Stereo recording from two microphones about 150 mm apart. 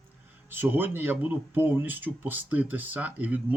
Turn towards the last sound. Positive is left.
turn(degrees=-10)  # may be behind; listen again after turning